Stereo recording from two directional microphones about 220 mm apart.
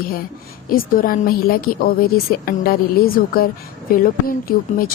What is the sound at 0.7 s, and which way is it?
A woman's voice, 40° left (ahead or behind).